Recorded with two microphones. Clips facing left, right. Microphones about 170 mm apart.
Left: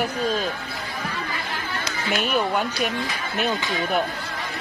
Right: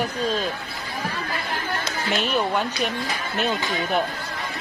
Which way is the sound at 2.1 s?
Centre (ahead or behind).